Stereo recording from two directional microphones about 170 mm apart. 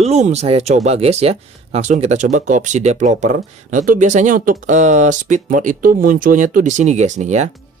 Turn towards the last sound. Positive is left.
turn(degrees=-45)  # may be behind; listen again after turning